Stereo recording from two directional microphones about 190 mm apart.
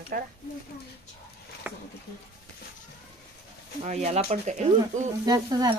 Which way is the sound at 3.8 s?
35° right (ahead or behind).